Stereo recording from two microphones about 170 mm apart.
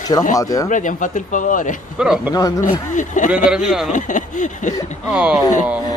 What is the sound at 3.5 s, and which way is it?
Speech, centre (ahead or behind).